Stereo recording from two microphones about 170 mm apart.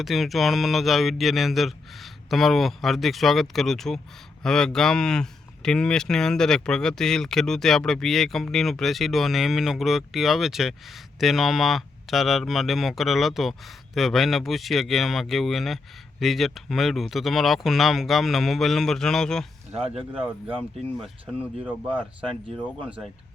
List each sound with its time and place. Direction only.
0.0 s speech: centre (ahead or behind)
19.7 s speech: 35° right (ahead or behind)
20.6 s speech: 5° left (ahead or behind)
21.3 s speech: 10° right (ahead or behind)
21.9 s speech: 30° right (ahead or behind)